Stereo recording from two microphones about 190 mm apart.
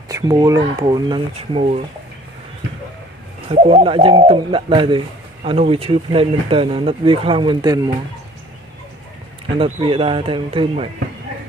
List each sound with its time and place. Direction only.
0.1 s speech: 20° right (ahead or behind)
3.4 s speech: 30° right (ahead or behind)
9.6 s speech: 30° right (ahead or behind)